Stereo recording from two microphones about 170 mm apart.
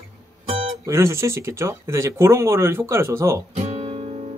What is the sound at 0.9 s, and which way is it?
Speech, 15° right (ahead or behind).